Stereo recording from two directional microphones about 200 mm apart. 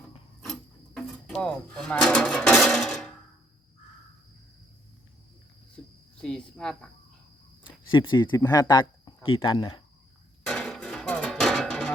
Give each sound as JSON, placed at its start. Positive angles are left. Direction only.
{"t": 0.4, "sound": "a sound", "side_deg": 0}
{"t": 5.7, "sound": "cricket", "side_deg": 5}
{"t": 8.1, "sound": "speech", "side_deg": 20}
{"t": 10.4, "sound": "music", "side_deg": 0}